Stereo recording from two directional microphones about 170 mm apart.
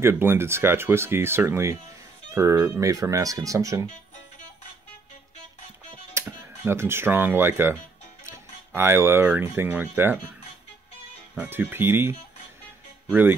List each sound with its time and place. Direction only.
0.0 s speech: 15° right (ahead or behind)
6.1 s speech: 15° right (ahead or behind)
11.3 s speech: 10° right (ahead or behind)